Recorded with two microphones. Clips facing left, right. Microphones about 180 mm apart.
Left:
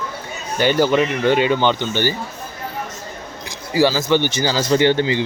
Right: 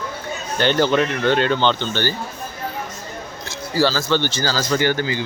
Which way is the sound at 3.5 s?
15° left (ahead or behind).